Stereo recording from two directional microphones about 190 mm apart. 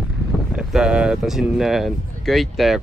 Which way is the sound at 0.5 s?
5° right (ahead or behind).